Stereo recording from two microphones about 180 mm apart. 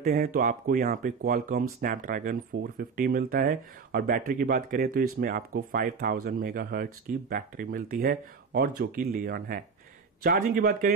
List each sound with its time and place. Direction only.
0.0 s speech: 50° right (ahead or behind)